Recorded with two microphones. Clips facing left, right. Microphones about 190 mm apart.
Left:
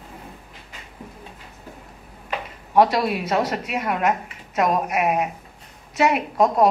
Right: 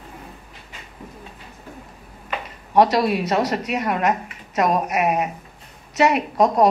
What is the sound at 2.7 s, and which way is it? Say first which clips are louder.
A woman's voice: right 1 dB; centre (ahead or behind).